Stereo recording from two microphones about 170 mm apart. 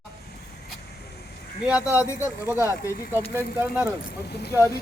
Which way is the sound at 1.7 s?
10° right (ahead or behind).